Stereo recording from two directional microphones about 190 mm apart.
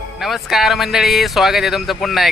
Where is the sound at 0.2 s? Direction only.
Centre (ahead or behind).